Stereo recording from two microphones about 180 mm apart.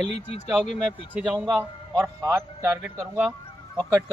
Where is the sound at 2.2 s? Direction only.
20° right (ahead or behind).